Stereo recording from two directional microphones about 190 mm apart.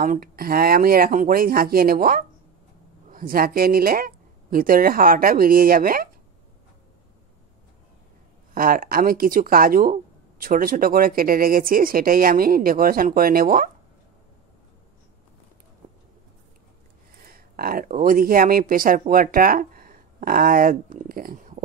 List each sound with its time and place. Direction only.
0.0 s speech: 50° right (ahead or behind)
8.5 s speech: 50° right (ahead or behind)
17.3 s speech: 50° right (ahead or behind)